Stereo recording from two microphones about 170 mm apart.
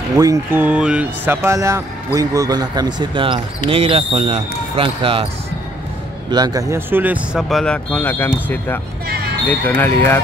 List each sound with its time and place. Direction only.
0.1 s speech: 20° right (ahead or behind)
6.3 s speech: 20° right (ahead or behind); by 8.8 s 10° left (ahead or behind)
9.0 s basketball bounce: 65° right (ahead or behind)
9.5 s speech: 10° left (ahead or behind)